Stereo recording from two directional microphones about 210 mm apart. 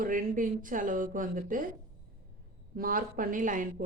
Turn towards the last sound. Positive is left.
turn(degrees=-40)  # may be behind; listen again after turning